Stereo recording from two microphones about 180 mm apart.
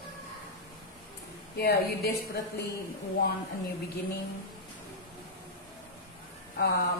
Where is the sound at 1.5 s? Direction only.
60° left (ahead or behind).